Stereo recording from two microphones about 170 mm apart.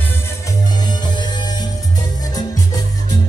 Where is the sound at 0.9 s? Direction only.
25° left (ahead or behind).